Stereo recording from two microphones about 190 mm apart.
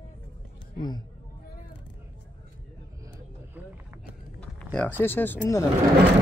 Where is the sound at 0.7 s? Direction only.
20° left (ahead or behind).